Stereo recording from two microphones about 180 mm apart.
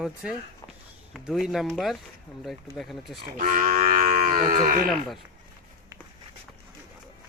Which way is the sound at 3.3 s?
45° right (ahead or behind).